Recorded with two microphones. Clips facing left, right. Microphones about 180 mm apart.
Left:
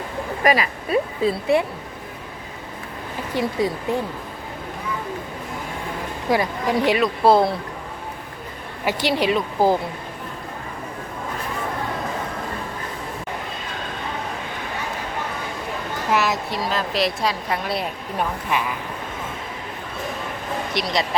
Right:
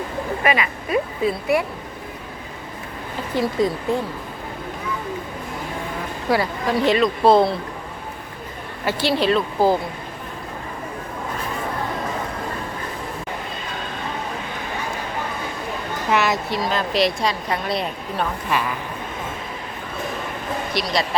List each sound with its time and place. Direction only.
0.4 s speech: 35° left (ahead or behind)
3.3 s speech: 15° left (ahead or behind)
6.3 s speech: 15° left (ahead or behind)
8.8 s speech: 15° left (ahead or behind)
16.0 s speech: centre (ahead or behind)
20.7 s speech: 20° left (ahead or behind)